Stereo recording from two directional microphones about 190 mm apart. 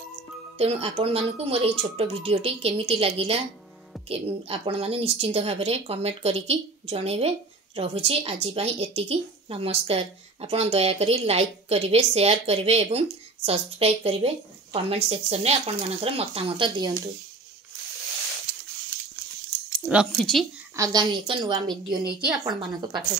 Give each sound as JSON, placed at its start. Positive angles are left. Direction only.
{"t": 0.6, "sound": "speech", "side_deg": -30}
{"t": 19.8, "sound": "speech", "side_deg": -5}
{"t": 20.7, "sound": "a woman's voice", "side_deg": -20}